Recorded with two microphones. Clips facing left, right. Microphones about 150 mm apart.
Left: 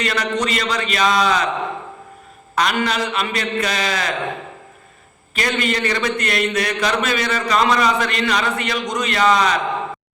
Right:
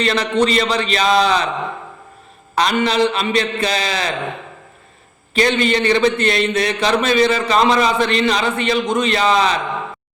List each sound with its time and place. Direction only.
0.0 s a man's voice: 30° right (ahead or behind)
2.6 s a man's voice: 30° right (ahead or behind)
5.3 s a man's voice: 30° right (ahead or behind)